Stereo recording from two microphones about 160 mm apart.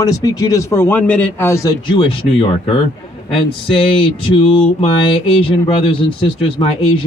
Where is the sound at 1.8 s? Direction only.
35° left (ahead or behind).